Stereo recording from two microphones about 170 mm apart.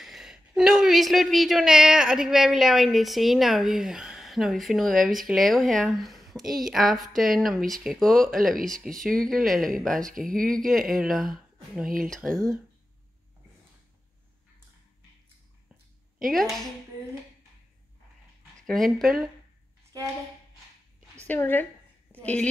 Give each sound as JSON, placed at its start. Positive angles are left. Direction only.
{"t": 0.0, "sound": "speech", "side_deg": 0}
{"t": 10.0, "sound": "speech", "side_deg": -55}
{"t": 10.5, "sound": "speech", "side_deg": 0}
{"t": 16.3, "sound": "speech", "side_deg": 0}
{"t": 18.7, "sound": "speech", "side_deg": 0}
{"t": 21.3, "sound": "a woman's voice", "side_deg": 10}